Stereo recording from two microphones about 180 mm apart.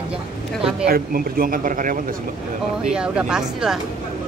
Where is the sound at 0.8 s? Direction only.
55° right (ahead or behind).